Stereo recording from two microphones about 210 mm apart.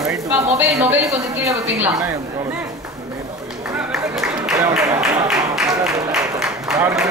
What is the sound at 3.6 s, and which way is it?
Run, 5° right (ahead or behind).